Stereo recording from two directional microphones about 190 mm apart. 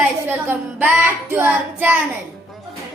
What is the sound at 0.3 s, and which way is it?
Child singing, 10° right (ahead or behind).